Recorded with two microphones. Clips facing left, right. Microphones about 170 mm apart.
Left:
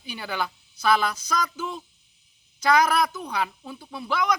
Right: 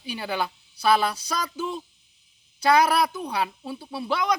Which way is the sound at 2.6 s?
30° right (ahead or behind).